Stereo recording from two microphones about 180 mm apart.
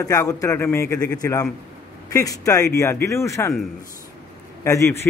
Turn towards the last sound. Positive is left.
turn(degrees=15)  # may be behind; listen again after turning